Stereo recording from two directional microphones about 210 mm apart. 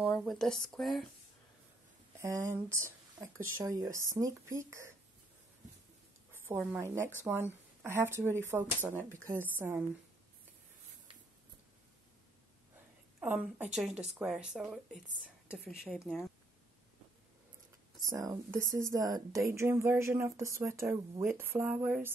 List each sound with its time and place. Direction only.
0.2 s speech: centre (ahead or behind)
2.2 s speech: 15° right (ahead or behind)
6.3 s a woman's voice: 10° right (ahead or behind)
13.2 s speech: 10° right (ahead or behind)
18.0 s speech: 15° right (ahead or behind)